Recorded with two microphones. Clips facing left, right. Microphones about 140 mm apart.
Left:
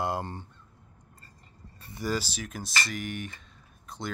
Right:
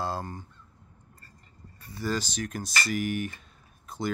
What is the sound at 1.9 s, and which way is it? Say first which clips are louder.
Speech: even; 15° left (ahead or behind).